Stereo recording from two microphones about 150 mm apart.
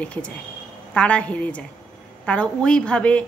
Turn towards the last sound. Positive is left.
turn(degrees=10)  # may be behind; listen again after turning